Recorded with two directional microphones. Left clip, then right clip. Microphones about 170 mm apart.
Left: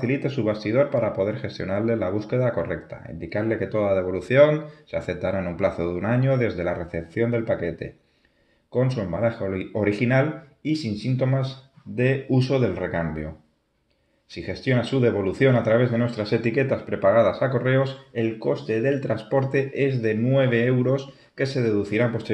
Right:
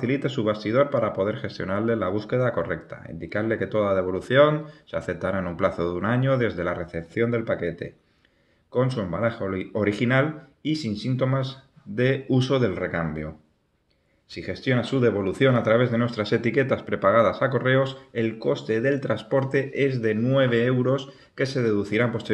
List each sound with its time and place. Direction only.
0.0 s speech: 25° right (ahead or behind)
14.3 s speech: 25° right (ahead or behind)